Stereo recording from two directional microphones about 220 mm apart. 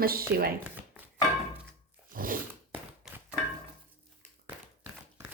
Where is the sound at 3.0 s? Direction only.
Centre (ahead or behind).